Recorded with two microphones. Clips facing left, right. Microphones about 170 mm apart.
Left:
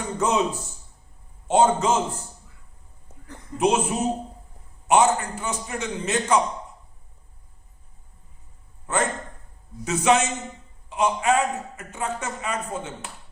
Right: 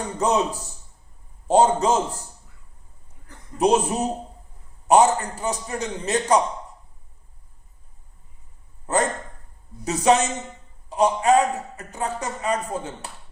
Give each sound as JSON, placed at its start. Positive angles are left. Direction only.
{"t": 0.2, "sound": "a man's voice", "side_deg": -35}
{"t": 3.6, "sound": "a man's voice", "side_deg": -35}
{"t": 8.9, "sound": "a sound", "side_deg": -35}
{"t": 9.8, "sound": "a man's voice", "side_deg": -35}